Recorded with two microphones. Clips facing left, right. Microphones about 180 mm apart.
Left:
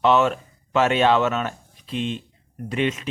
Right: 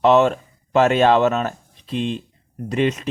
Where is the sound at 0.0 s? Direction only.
40° right (ahead or behind).